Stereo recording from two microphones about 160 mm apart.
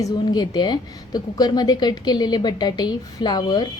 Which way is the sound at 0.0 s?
25° left (ahead or behind).